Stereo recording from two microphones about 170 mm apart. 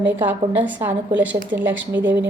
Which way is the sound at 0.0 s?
10° right (ahead or behind).